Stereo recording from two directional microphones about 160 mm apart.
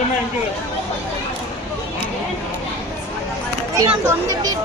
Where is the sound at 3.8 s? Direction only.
20° right (ahead or behind).